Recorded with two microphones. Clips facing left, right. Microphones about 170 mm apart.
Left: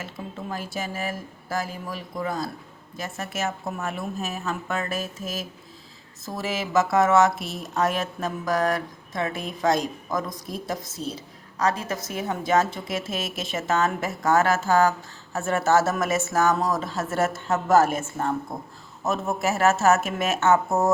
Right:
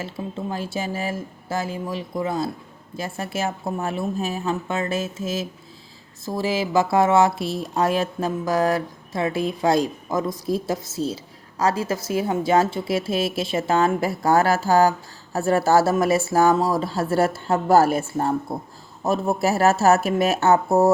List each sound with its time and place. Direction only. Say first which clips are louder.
0.5 s speech: right 2 dB; 30° right (ahead or behind)